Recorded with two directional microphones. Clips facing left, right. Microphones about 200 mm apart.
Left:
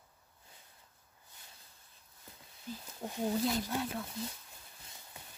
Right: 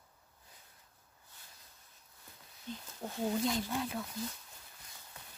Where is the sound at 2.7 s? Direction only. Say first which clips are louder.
Even; 5° left (ahead or behind).